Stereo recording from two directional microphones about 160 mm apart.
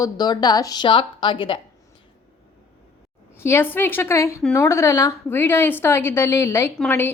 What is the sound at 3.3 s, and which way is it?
A woman's voice, 15° left (ahead or behind).